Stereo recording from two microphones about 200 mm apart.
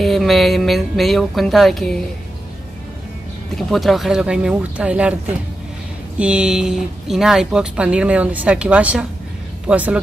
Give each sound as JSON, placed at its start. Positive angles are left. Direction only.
{"t": 0.0, "sound": "speech", "side_deg": 0}
{"t": 3.5, "sound": "speech", "side_deg": 0}
{"t": 6.1, "sound": "speech", "side_deg": -5}